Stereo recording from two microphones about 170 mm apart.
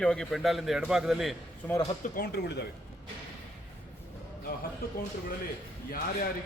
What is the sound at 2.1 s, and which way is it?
Speech, 70° left (ahead or behind).